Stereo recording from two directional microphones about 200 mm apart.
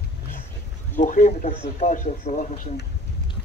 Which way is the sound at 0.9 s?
40° left (ahead or behind).